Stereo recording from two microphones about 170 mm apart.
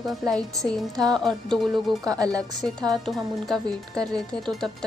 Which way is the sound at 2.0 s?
20° right (ahead or behind).